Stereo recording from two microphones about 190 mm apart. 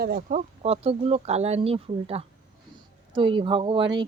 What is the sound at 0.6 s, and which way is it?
Speech, 30° right (ahead or behind).